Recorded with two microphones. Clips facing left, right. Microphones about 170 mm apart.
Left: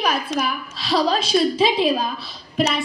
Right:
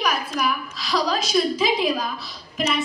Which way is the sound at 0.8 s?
30° left (ahead or behind).